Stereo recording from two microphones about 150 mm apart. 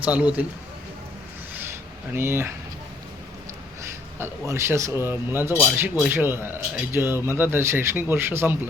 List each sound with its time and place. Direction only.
0.0 s speech: 10° right (ahead or behind)
2.1 s speech: 15° right (ahead or behind)
4.2 s speech: 20° right (ahead or behind)